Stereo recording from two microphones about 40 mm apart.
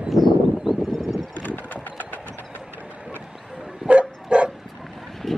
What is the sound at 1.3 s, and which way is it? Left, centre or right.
Clip-clop, left.